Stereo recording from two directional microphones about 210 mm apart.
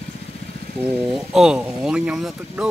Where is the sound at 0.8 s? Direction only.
Centre (ahead or behind).